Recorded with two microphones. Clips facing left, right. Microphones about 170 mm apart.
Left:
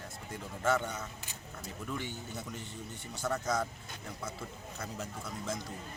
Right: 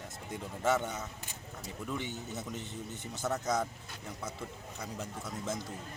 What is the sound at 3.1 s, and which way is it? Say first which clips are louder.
Speech: even; 20° right (ahead or behind).